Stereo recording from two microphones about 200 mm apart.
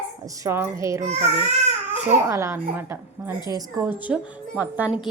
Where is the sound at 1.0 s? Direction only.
35° right (ahead or behind).